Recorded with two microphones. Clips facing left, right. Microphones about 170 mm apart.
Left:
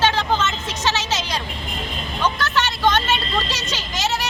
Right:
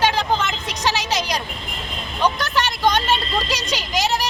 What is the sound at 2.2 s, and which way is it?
Vehicle, 15° right (ahead or behind).